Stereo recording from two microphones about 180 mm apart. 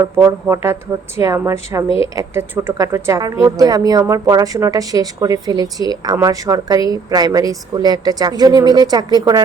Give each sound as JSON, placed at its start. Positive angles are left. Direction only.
{"t": 0.0, "sound": "a woman's voice", "side_deg": -15}